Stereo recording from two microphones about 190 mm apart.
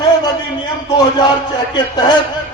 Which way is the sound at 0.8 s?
20° left (ahead or behind).